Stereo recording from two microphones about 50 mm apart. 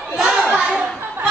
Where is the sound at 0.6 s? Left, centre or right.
Centre.